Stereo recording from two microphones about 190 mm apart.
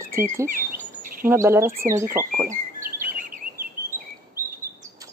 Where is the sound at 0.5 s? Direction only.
45° right (ahead or behind).